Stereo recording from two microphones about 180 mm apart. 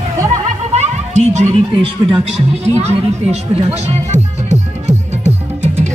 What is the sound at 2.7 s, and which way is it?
Music, 35° right (ahead or behind).